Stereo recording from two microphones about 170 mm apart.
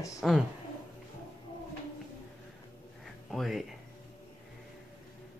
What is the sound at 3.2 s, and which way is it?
Speech, centre (ahead or behind).